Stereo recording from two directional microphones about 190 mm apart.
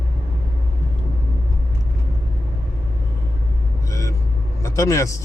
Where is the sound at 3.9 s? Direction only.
15° left (ahead or behind).